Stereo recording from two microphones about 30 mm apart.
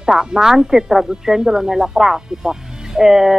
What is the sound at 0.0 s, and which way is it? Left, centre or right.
Speech, right.